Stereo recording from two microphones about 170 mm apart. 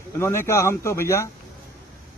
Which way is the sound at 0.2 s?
15° left (ahead or behind).